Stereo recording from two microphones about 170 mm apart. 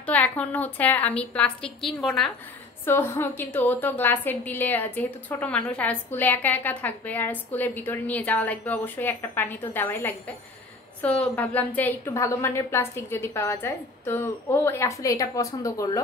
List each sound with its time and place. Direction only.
0.0 s a woman's voice: 10° left (ahead or behind)
2.8 s a woman's voice: 15° left (ahead or behind)